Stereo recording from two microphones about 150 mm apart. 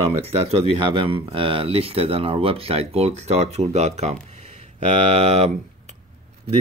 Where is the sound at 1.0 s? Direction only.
35° right (ahead or behind).